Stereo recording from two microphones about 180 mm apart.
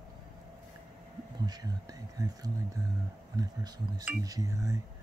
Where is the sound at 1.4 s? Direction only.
20° right (ahead or behind).